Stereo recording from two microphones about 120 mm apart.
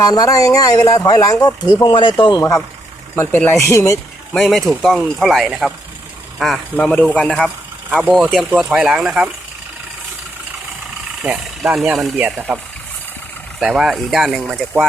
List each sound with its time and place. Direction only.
0.0 s speech: 30° left (ahead or behind)
3.2 s speech: 20° left (ahead or behind)
4.4 s speech: centre (ahead or behind)
8.0 s speech: 5° right (ahead or behind)
11.2 s speech: 5° right (ahead or behind)
12.2 s speech: 15° right (ahead or behind)
13.6 s speech: 5° right (ahead or behind)